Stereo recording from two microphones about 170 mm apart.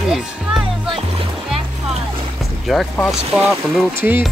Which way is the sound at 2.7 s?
Centre (ahead or behind).